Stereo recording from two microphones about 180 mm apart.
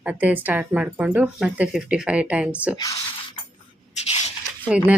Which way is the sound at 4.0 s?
40° left (ahead or behind).